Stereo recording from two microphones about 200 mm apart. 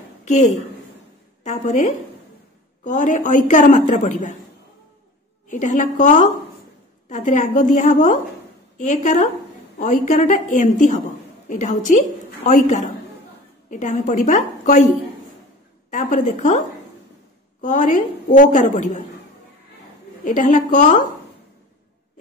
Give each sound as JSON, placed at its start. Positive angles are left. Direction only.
{"t": 0.2, "sound": "a woman's voice", "side_deg": 35}
{"t": 5.5, "sound": "a woman's voice", "side_deg": 40}
{"t": 15.9, "sound": "a woman's voice", "side_deg": 40}
{"t": 20.2, "sound": "a woman's voice", "side_deg": 40}